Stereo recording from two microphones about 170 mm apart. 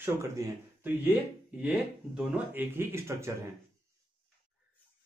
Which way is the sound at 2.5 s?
15° right (ahead or behind).